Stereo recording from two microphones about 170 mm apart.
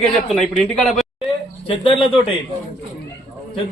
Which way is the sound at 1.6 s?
30° left (ahead or behind).